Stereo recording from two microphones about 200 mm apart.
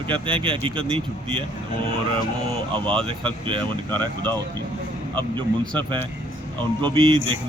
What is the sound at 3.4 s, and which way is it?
Speech, 25° right (ahead or behind).